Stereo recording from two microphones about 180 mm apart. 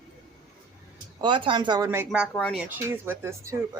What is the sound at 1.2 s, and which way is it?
Speech, 25° right (ahead or behind).